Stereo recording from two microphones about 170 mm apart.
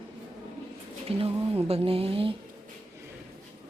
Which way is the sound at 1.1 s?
35° right (ahead or behind).